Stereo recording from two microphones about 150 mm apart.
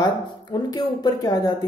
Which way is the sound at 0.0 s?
30° left (ahead or behind).